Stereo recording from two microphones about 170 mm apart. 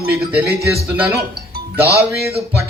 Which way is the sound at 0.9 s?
10° right (ahead or behind).